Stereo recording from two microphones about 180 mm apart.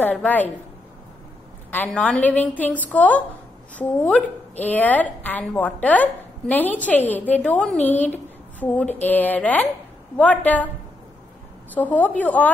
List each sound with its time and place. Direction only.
0.0 s a woman's voice: 10° left (ahead or behind)
1.7 s a woman's voice: 10° left (ahead or behind)
11.7 s a woman's voice: 10° left (ahead or behind)